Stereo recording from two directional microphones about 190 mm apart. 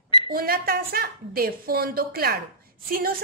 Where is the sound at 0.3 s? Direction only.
50° right (ahead or behind).